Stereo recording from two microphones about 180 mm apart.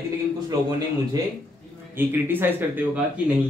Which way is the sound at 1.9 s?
10° right (ahead or behind).